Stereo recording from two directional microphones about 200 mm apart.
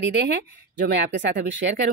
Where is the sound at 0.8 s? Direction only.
60° right (ahead or behind).